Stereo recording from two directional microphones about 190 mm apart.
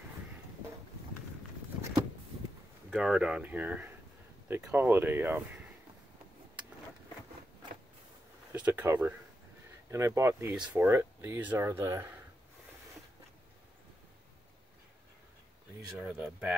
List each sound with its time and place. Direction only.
2.9 s speech: 5° right (ahead or behind)
8.5 s speech: 10° right (ahead or behind)
16.0 s speech: 5° right (ahead or behind)